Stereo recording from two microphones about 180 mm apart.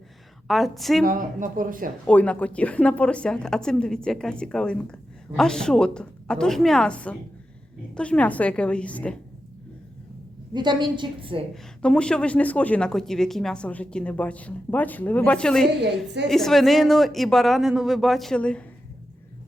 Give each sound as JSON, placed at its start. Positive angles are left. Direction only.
{"t": 0.4, "sound": "a woman's voice", "side_deg": 0}
{"t": 1.0, "sound": "speech", "side_deg": -50}
{"t": 2.0, "sound": "a woman's voice", "side_deg": 5}
{"t": 10.5, "sound": "a woman's voice", "side_deg": -25}
{"t": 11.8, "sound": "a woman's voice", "side_deg": 5}